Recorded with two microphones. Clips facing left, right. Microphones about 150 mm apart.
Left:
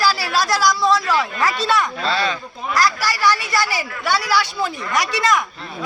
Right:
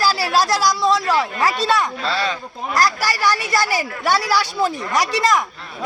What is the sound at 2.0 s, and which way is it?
Speech, 5° right (ahead or behind).